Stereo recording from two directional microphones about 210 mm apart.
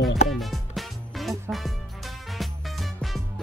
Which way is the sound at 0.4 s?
Centre (ahead or behind).